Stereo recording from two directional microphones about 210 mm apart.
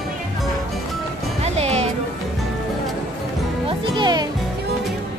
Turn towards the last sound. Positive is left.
turn(degrees=-20)  # may be behind; listen again after turning